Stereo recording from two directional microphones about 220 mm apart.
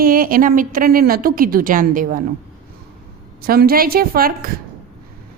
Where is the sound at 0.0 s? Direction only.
40° right (ahead or behind).